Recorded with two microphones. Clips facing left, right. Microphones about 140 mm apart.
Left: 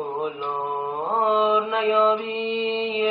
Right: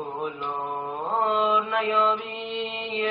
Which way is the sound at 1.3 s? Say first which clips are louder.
Left 4 dB; centre (ahead or behind).